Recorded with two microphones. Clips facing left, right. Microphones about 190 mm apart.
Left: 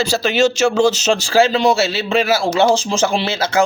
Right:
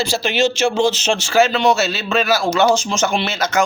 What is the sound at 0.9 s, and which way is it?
A man's voice, 40° left (ahead or behind).